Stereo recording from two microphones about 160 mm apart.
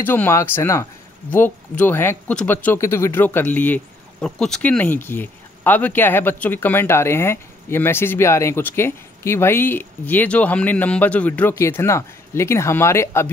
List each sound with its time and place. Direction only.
0.0 s speech: 10° left (ahead or behind)